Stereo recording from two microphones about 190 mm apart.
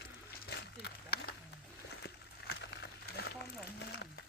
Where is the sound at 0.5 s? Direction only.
60° left (ahead or behind).